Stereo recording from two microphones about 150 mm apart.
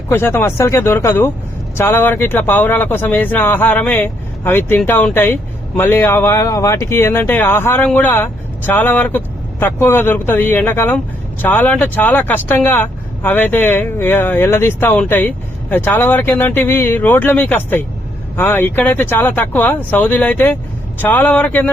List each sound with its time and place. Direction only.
0.1 s speech: 15° left (ahead or behind)